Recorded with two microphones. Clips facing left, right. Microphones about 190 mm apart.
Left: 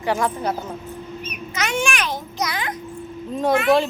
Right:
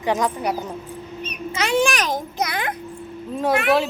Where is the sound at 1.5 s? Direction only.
35° right (ahead or behind); by 2.8 s 55° right (ahead or behind).